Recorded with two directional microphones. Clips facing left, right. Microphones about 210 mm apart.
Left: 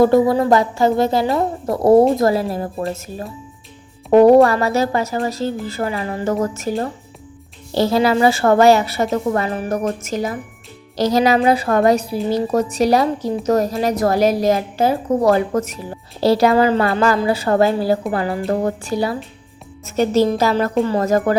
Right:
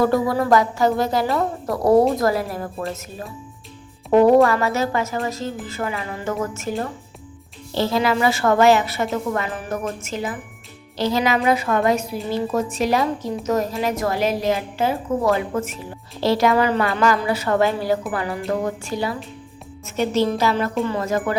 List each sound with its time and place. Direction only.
0.0 s a woman's voice: 25° left (ahead or behind)